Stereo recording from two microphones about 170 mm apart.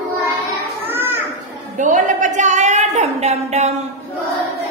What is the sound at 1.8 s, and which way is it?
A woman's voice, 50° right (ahead or behind).